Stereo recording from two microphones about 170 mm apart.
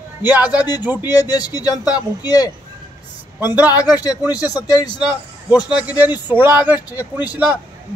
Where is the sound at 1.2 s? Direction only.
25° left (ahead or behind).